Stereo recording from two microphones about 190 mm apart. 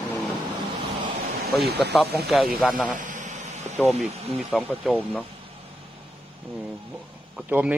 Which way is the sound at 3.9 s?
35° right (ahead or behind).